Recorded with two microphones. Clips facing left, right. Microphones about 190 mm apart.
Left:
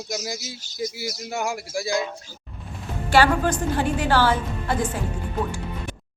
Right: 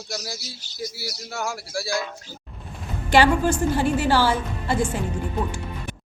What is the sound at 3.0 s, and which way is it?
A woman's voice, 15° right (ahead or behind).